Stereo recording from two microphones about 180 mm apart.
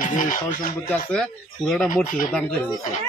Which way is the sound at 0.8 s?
5° left (ahead or behind).